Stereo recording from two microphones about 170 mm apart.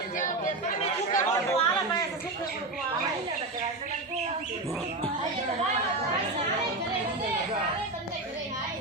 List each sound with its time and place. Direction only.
0.2 s speech: 45° left (ahead or behind)